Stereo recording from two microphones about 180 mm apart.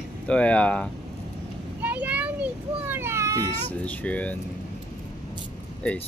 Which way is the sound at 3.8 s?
10° left (ahead or behind).